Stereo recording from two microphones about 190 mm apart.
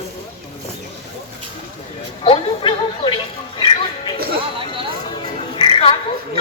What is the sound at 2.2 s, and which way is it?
Speech, 25° left (ahead or behind).